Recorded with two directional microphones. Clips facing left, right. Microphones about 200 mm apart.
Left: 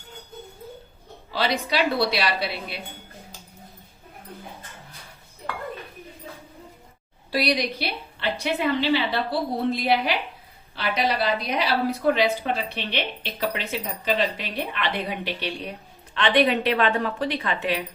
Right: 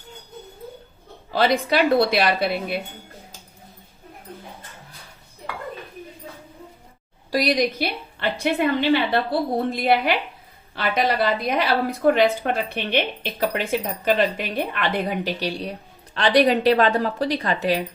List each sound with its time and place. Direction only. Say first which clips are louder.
1.3 s a woman's voice: right 5 dB; 50° right (ahead or behind)
7.3 s a woman's voice: right 4 dB; 45° right (ahead or behind)